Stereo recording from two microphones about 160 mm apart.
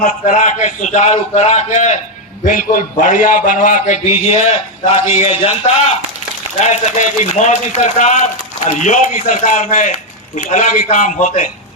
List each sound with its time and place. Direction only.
0.0 s a man's voice: 55° left (ahead or behind)
6.6 s a man's voice: 50° left (ahead or behind)